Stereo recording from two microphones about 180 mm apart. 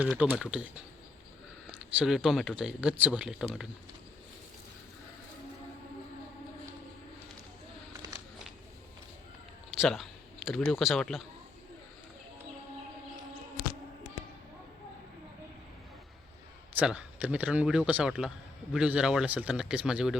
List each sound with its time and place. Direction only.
0.0 s speech: 5° right (ahead or behind)
1.7 s speech: 5° right (ahead or behind)
9.8 s speech: centre (ahead or behind)
16.7 s speech: 5° right (ahead or behind)